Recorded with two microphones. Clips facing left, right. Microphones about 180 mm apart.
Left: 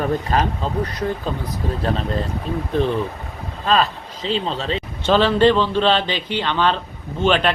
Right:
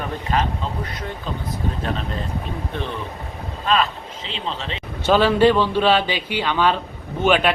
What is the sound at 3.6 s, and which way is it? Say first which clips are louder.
Speech: left 2 dB; 35° left (ahead or behind).